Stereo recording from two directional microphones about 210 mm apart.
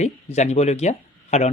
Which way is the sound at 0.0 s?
35° left (ahead or behind).